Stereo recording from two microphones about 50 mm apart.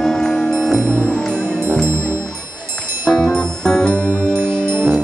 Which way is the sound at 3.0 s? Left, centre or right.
Centre.